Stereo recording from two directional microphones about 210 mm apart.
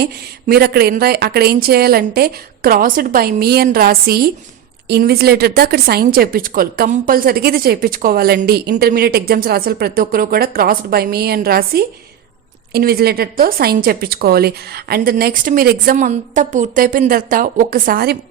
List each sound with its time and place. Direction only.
0.0 s a woman's voice: 45° right (ahead or behind)